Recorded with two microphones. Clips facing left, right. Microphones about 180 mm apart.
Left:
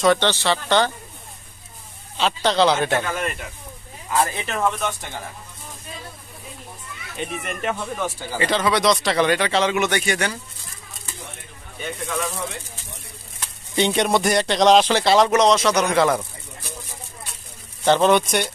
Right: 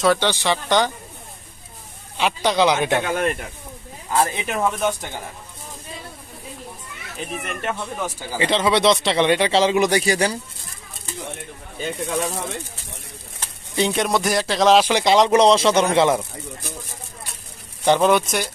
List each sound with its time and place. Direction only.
0.0 s speech: 5° right (ahead or behind)
2.1 s speech: 10° right (ahead or behind)
4.1 s speech: 25° right (ahead or behind)
4.5 s speech: 10° right (ahead or behind)
7.2 s speech: centre (ahead or behind)
8.5 s speech: 25° right (ahead or behind)
11.8 s speech: 30° right (ahead or behind)
13.7 s speech: centre (ahead or behind)
14.9 s speech: 15° right (ahead or behind)
15.3 s speech: 30° right (ahead or behind)
17.8 s speech: 10° right (ahead or behind)